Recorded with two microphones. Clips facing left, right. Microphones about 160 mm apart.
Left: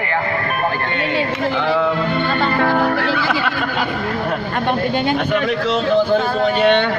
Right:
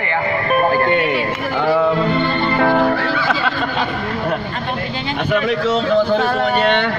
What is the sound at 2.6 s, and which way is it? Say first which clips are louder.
Music: right 4 dB; centre (ahead or behind).